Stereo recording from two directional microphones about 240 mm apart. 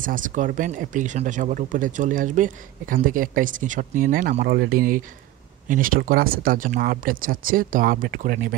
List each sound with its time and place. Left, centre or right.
0.0 s speech: right